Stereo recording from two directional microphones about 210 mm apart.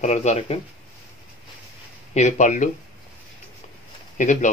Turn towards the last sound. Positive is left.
turn(degrees=35)  # may be behind; listen again after turning